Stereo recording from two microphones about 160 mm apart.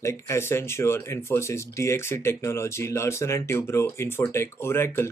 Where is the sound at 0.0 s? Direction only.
15° left (ahead or behind).